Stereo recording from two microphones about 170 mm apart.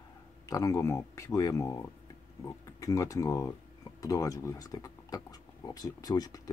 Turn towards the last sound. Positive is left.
turn(degrees=20)  # may be behind; listen again after turning